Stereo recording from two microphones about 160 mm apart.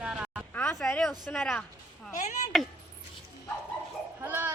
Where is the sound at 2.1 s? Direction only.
50° left (ahead or behind).